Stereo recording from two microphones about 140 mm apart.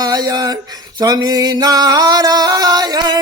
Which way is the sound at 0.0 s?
30° right (ahead or behind).